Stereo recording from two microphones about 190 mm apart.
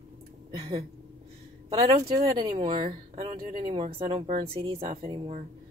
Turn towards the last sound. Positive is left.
turn(degrees=-25)  # may be behind; listen again after turning